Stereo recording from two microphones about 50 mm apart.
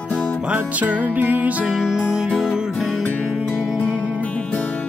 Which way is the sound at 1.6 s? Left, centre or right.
Centre.